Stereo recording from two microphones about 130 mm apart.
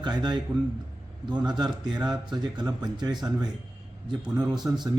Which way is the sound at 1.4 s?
35° right (ahead or behind).